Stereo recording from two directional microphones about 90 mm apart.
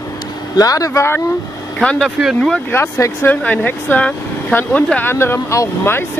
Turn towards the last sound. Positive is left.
turn(degrees=30)  # may be behind; listen again after turning